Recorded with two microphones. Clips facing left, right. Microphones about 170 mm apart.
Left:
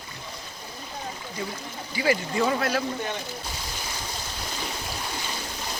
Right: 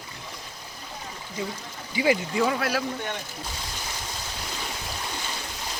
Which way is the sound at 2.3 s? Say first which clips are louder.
Even; 5° right (ahead or behind).